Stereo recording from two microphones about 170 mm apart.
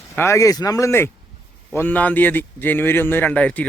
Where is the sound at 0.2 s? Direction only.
15° left (ahead or behind).